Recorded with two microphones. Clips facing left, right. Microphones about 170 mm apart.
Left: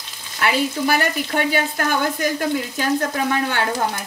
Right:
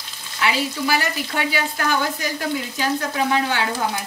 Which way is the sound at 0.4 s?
50° left (ahead or behind).